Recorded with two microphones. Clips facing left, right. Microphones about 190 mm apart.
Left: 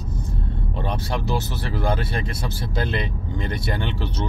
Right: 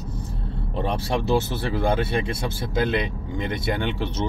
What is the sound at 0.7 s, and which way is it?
Speech, 25° right (ahead or behind).